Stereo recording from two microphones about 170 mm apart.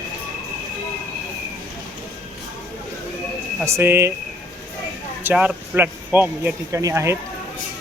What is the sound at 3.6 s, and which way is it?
Speech, 15° right (ahead or behind).